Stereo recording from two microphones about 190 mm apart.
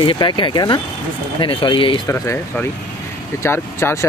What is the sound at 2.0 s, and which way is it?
Speech, 15° left (ahead or behind).